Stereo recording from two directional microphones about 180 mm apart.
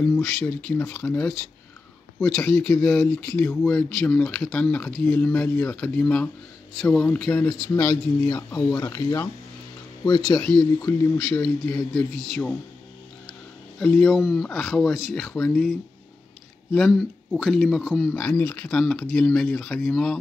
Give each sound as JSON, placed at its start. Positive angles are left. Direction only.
{"t": 0.0, "sound": "speech", "side_deg": 5}
{"t": 7.9, "sound": "speech", "side_deg": 20}
{"t": 10.6, "sound": "speech", "side_deg": 10}
{"t": 13.7, "sound": "speech", "side_deg": 0}
{"t": 16.7, "sound": "speech", "side_deg": 0}